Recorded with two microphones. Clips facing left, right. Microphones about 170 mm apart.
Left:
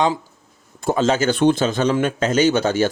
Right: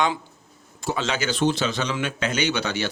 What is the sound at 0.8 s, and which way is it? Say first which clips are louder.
Speech: left 8 dB; 45° left (ahead or behind).